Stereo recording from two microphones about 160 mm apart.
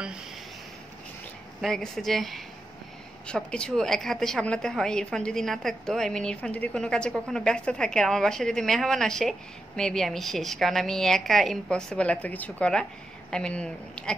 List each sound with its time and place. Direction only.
1.6 s a woman's voice: 5° left (ahead or behind)